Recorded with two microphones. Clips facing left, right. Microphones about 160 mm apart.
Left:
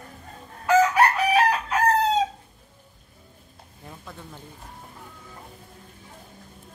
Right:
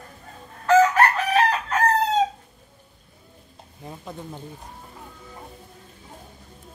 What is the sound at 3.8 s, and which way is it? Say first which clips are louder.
Speech: right 6 dB; 20° right (ahead or behind).